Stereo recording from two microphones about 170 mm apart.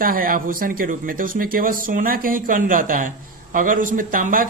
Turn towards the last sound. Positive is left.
turn(degrees=-55)  # may be behind; listen again after turning